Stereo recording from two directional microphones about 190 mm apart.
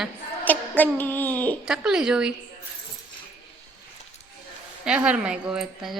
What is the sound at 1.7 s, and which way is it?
Speech, 5° right (ahead or behind).